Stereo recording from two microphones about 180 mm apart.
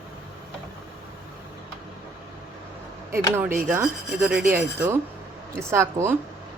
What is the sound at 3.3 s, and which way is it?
Speech, 15° right (ahead or behind).